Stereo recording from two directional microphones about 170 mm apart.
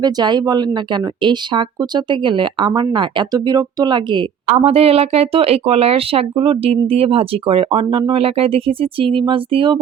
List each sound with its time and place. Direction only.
0.0 s speech: 25° right (ahead or behind)